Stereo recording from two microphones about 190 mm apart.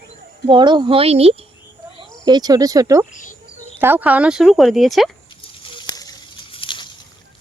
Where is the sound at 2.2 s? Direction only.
20° right (ahead or behind); by 5.1 s centre (ahead or behind).